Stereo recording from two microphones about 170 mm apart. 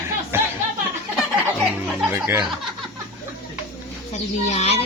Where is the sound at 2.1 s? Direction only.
15° right (ahead or behind).